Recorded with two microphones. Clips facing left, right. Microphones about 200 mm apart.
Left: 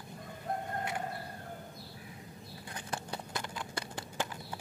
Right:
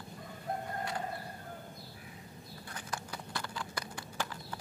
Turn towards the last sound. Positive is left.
turn(degrees=25)  # may be behind; listen again after turning